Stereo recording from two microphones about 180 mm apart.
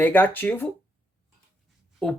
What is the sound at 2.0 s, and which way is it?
Speech, 5° left (ahead or behind).